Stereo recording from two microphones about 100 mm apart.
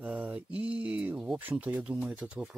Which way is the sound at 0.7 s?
10° right (ahead or behind).